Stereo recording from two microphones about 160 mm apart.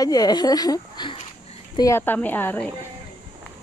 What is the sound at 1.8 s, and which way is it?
Speech, 15° left (ahead or behind).